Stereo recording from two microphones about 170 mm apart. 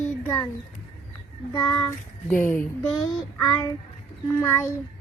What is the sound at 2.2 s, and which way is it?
Speech, 15° left (ahead or behind).